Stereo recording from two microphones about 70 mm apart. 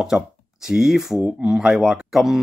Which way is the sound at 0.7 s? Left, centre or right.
Centre.